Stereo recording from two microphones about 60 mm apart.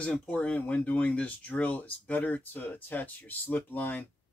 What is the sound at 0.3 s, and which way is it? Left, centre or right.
Speech, left.